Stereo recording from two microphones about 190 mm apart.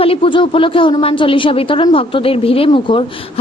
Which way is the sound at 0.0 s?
30° left (ahead or behind).